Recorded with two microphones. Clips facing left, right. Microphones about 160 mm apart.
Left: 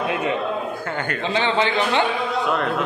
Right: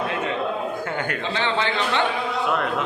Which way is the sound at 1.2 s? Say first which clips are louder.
Left 6 dB; 15° left (ahead or behind).